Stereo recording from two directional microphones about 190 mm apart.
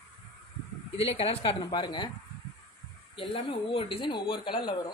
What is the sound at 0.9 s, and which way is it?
Speech, 30° left (ahead or behind).